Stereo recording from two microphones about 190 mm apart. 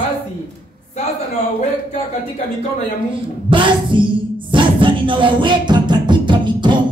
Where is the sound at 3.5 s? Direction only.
25° right (ahead or behind).